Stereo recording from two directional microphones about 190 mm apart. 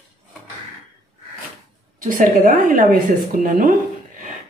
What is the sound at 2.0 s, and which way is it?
A woman's voice, 45° right (ahead or behind).